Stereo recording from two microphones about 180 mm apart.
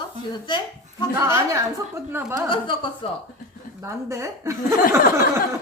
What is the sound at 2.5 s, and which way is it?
Speech, 25° left (ahead or behind).